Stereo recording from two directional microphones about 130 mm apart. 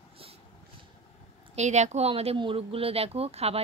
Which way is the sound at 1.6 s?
60° right (ahead or behind).